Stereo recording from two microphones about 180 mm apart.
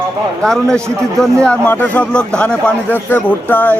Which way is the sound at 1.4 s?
10° left (ahead or behind).